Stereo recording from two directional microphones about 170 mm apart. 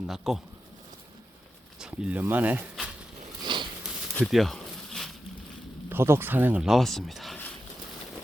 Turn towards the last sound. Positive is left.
turn(degrees=5)  # may be behind; listen again after turning